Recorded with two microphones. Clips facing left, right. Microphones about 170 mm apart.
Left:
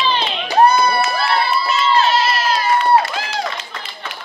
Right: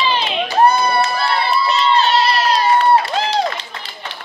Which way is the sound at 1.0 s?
35° right (ahead or behind).